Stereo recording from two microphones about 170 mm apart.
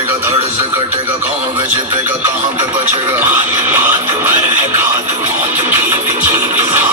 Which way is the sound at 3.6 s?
15° right (ahead or behind).